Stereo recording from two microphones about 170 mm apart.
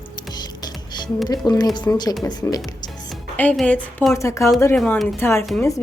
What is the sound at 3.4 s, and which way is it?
Speech, 5° left (ahead or behind).